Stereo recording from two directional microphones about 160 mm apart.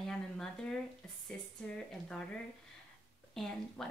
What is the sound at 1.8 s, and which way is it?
Speech, 5° left (ahead or behind).